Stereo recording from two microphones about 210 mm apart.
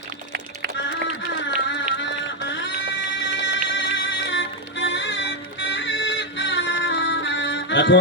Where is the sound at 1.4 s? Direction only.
55° left (ahead or behind).